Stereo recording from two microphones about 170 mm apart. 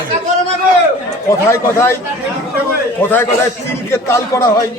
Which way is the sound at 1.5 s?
15° left (ahead or behind).